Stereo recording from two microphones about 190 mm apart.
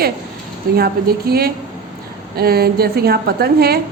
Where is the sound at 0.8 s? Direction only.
55° right (ahead or behind).